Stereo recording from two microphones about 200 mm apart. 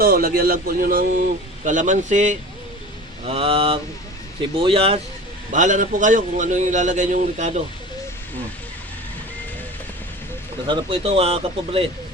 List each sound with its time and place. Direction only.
0.0 s a man's voice: 45° right (ahead or behind); by 4.9 s 30° right (ahead or behind)
5.5 s a man's voice: 40° right (ahead or behind)
10.7 s speech: 25° right (ahead or behind)